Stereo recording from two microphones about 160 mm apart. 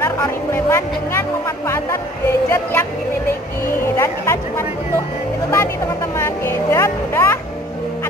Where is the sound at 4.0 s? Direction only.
15° left (ahead or behind).